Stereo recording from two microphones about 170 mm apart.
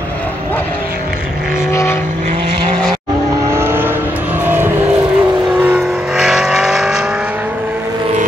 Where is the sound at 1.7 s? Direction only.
15° left (ahead or behind).